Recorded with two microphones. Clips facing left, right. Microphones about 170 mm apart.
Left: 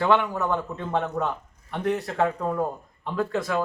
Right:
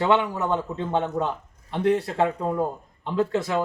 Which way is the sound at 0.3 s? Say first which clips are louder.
Right 1 dB; 25° right (ahead or behind).